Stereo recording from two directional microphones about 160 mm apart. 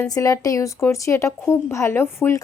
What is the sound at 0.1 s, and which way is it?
Speech, 20° left (ahead or behind).